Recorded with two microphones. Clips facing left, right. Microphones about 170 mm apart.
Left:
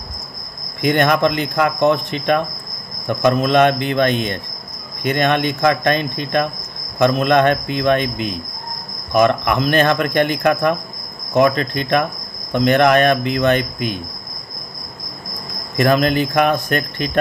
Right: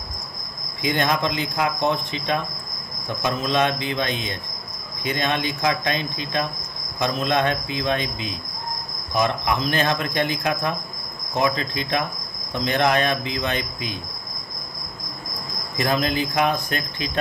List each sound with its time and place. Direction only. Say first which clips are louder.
0.7 s speech: left 7 dB; 60° left (ahead or behind)
15.8 s speech: left 7 dB; 65° left (ahead or behind)